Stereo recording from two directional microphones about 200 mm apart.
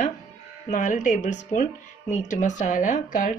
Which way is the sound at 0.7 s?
40° left (ahead or behind).